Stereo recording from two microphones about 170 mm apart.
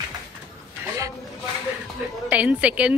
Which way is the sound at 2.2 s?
10° right (ahead or behind).